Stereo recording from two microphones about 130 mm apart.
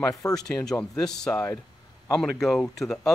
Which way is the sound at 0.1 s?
25° left (ahead or behind).